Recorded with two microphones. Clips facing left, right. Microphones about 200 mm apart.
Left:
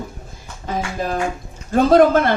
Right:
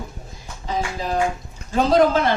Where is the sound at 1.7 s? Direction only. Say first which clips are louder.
Left 4 dB; 55° left (ahead or behind).